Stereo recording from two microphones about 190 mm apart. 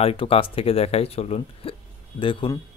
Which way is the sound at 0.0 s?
30° left (ahead or behind).